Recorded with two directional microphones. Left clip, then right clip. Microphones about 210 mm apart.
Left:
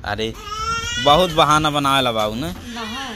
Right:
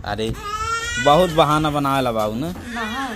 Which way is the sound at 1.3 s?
5° right (ahead or behind).